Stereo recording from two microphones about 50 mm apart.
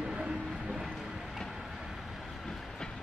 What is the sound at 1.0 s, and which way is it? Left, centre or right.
Vehicle, centre.